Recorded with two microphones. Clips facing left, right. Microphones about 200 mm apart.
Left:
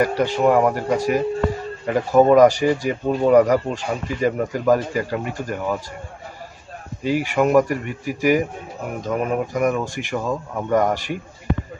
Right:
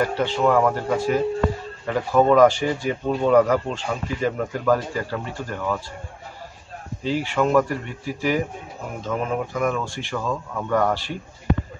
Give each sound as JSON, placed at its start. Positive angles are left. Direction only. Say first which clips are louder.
{"t": 0.0, "sound": "speech", "louder": "left 3 dB", "side_deg": 15}
{"t": 7.0, "sound": "speech", "louder": "left 3 dB", "side_deg": 15}